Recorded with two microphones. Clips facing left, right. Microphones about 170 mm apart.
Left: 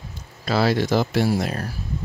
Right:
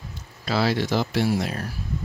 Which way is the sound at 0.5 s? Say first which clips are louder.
Left 3 dB; 45° left (ahead or behind).